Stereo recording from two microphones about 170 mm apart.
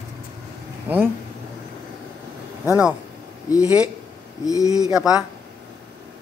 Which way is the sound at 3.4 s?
20° left (ahead or behind).